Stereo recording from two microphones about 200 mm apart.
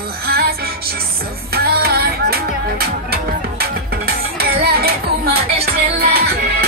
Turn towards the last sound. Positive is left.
turn(degrees=-50)  # may be behind; listen again after turning